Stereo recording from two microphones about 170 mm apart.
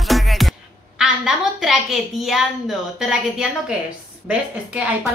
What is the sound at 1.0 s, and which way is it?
A woman's voice, 5° right (ahead or behind).